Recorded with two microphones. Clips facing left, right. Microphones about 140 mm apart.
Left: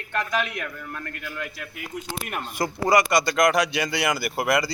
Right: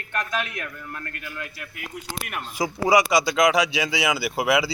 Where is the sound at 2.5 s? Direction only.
5° right (ahead or behind).